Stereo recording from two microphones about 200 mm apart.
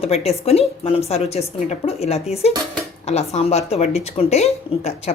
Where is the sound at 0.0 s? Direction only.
30° left (ahead or behind).